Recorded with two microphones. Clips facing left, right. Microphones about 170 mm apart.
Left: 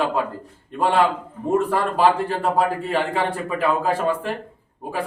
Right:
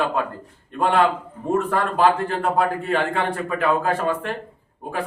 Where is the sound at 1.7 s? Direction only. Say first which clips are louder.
Right 2 dB; 5° left (ahead or behind).